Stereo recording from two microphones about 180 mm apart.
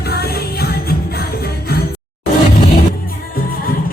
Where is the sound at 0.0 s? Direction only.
60° left (ahead or behind).